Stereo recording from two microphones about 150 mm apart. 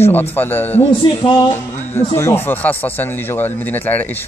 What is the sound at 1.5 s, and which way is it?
Speech, 15° left (ahead or behind).